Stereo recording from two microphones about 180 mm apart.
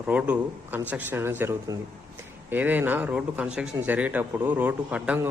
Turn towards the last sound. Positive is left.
turn(degrees=-5)  # may be behind; listen again after turning